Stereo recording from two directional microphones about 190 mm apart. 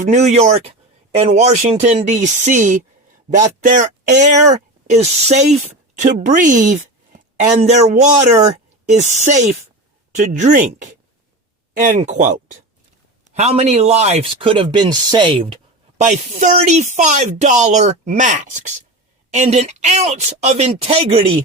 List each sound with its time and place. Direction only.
0.0 s speech: 35° right (ahead or behind)
16.0 s speech: 40° right (ahead or behind)